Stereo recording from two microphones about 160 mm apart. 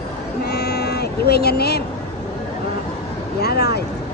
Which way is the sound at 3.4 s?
85° left.